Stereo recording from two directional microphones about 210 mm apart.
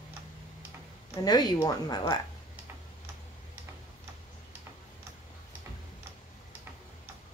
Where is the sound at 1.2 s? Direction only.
20° left (ahead or behind).